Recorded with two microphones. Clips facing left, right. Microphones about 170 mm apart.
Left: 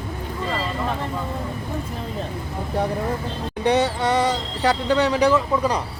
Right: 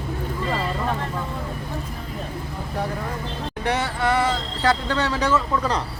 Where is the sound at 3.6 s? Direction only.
20° left (ahead or behind).